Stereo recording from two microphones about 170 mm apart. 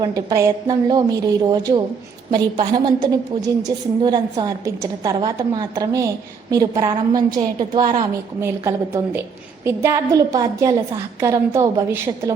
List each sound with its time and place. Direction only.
0.0 s a woman's voice: 20° right (ahead or behind)
8.4 s a woman's voice: 15° right (ahead or behind)